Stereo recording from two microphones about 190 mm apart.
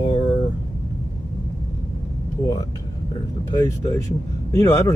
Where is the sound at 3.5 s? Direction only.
15° left (ahead or behind).